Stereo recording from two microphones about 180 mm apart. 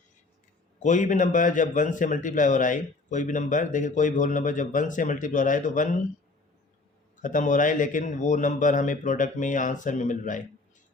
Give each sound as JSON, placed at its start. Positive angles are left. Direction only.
{"t": 0.8, "sound": "a man's voice", "side_deg": 45}
{"t": 7.2, "sound": "a man's voice", "side_deg": 45}